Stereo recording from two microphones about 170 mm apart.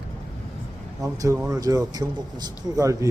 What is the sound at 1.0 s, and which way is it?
Speech, 20° right (ahead or behind).